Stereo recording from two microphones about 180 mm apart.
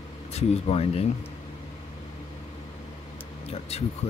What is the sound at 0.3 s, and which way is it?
Speech, 35° left (ahead or behind).